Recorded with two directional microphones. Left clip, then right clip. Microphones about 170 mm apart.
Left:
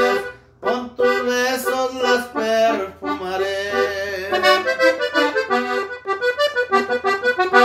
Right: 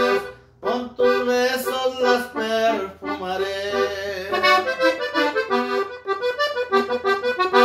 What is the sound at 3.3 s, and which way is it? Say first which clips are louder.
Accordion: left 2 dB; 20° left (ahead or behind).